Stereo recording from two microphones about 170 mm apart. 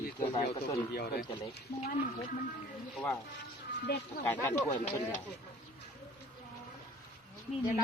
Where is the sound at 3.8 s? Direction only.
70° left (ahead or behind).